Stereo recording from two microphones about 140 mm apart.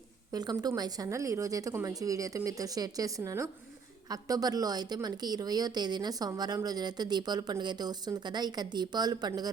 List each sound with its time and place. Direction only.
0.3 s a woman's voice: 30° right (ahead or behind)